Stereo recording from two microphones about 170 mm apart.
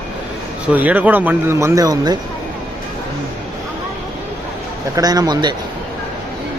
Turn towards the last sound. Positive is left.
turn(degrees=-25)  # may be behind; listen again after turning